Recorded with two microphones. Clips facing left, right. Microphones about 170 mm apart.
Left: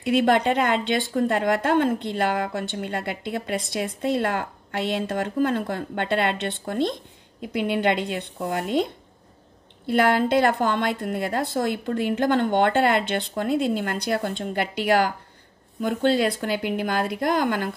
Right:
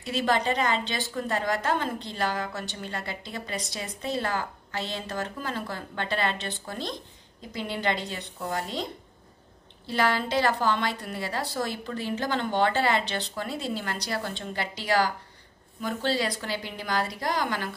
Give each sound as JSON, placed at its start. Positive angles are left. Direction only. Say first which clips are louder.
{"t": 0.0, "sound": "a woman's voice", "louder": "left 7 dB", "side_deg": 60}
{"t": 9.8, "sound": "a woman's voice", "louder": "left 7 dB", "side_deg": 55}